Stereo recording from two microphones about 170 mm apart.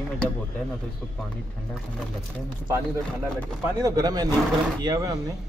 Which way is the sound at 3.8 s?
20° right (ahead or behind).